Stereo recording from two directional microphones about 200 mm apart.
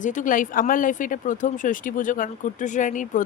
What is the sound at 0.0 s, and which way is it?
Speech, 40° left (ahead or behind).